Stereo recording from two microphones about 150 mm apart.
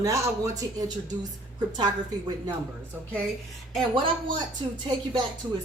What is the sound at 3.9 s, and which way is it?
Speech, 30° right (ahead or behind).